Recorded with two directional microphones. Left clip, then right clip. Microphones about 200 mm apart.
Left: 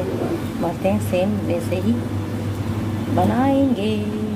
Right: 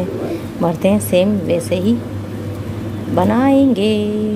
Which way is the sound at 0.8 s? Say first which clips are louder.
Right 6 dB; 50° right (ahead or behind).